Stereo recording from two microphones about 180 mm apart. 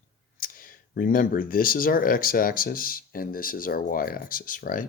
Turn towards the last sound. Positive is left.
turn(degrees=50)  # may be behind; listen again after turning